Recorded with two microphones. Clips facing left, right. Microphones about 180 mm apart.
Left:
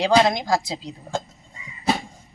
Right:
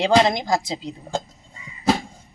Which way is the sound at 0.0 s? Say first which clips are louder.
Right 1 dB; centre (ahead or behind).